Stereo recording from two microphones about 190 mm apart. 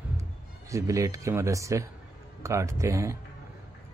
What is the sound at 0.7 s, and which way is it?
A man's voice, 15° right (ahead or behind).